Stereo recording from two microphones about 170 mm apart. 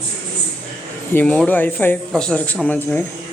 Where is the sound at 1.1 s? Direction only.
10° left (ahead or behind).